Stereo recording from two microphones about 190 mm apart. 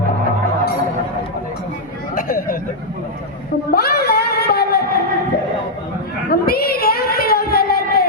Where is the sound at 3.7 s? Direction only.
55° left (ahead or behind).